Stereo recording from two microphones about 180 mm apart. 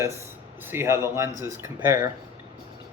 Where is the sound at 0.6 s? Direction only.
15° right (ahead or behind).